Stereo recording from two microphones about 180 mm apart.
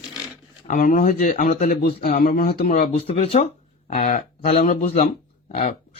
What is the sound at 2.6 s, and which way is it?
Speech, 60° left (ahead or behind).